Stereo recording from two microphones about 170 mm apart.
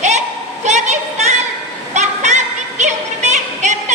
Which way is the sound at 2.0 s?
45° right (ahead or behind).